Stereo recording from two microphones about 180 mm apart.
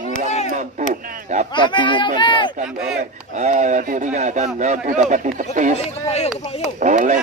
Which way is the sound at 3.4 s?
40° right (ahead or behind).